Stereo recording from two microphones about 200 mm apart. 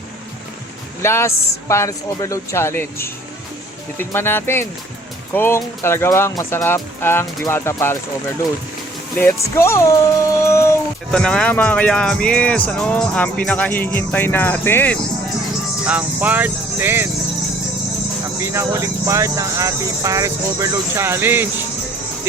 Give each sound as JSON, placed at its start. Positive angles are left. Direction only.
{"t": 1.0, "sound": "music", "side_deg": 15}
{"t": 9.1, "sound": "music", "side_deg": 10}
{"t": 15.9, "sound": "speech", "side_deg": -5}
{"t": 18.3, "sound": "speech", "side_deg": -15}